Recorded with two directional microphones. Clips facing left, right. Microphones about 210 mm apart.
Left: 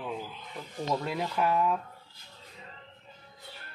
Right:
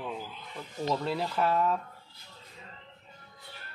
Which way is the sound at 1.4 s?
10° left (ahead or behind).